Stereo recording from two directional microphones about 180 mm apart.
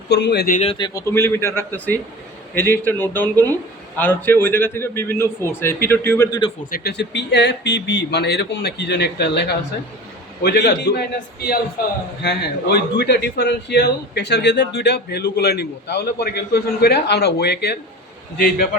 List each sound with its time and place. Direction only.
0.1 s a man's voice: 70° left (ahead or behind)
0.5 s speech: 35° left (ahead or behind)
0.8 s a man's voice: 15° left (ahead or behind)
6.7 s a man's voice: 60° left (ahead or behind)
18.3 s a man's voice: 55° left (ahead or behind)